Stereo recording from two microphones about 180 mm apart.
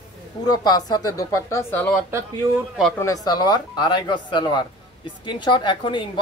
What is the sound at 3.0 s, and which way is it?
Speech, 20° left (ahead or behind).